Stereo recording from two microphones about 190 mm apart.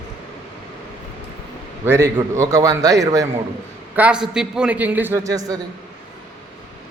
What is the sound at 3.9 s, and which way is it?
A man's voice, 5° right (ahead or behind).